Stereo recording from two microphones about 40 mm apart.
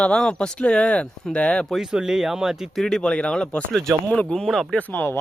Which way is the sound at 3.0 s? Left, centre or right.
Left.